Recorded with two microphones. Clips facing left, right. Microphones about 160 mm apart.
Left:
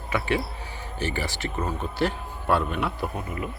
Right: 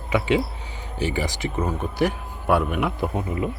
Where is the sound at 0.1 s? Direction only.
15° right (ahead or behind).